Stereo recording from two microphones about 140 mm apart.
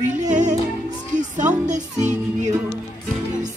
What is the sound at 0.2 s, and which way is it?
Music, 60° right (ahead or behind).